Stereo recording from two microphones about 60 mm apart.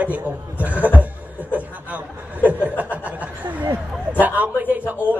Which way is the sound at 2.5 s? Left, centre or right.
Right.